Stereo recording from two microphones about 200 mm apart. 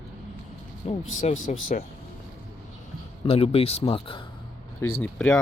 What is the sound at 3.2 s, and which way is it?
Speech, 25° left (ahead or behind).